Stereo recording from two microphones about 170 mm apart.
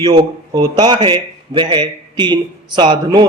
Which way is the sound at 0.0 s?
25° right (ahead or behind).